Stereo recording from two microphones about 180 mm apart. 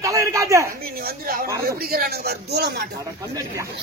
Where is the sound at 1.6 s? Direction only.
55° right (ahead or behind).